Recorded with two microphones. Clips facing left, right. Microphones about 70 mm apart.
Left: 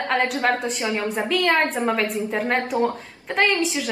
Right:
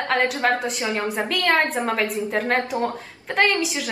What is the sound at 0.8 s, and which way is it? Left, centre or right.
Speech, right.